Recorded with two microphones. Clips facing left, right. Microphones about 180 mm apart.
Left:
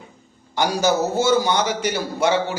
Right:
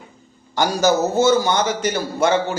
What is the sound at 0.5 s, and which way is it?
Speech, 45° right (ahead or behind).